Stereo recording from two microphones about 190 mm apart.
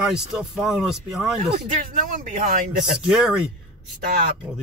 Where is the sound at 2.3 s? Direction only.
45° right (ahead or behind).